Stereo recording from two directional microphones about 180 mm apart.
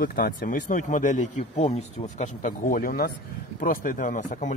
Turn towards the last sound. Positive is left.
turn(degrees=45)  # may be behind; listen again after turning